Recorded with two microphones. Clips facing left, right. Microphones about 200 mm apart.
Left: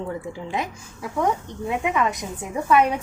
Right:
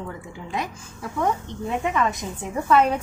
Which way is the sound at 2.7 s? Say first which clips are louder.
Even; 15° left (ahead or behind).